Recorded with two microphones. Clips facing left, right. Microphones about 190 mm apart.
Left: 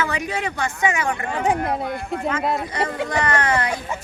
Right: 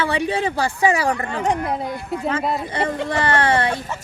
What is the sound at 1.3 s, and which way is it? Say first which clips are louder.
Speech: even; 5° left (ahead or behind).